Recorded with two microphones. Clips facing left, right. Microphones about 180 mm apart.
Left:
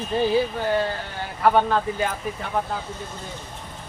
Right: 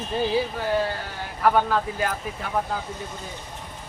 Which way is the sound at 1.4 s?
Centre (ahead or behind).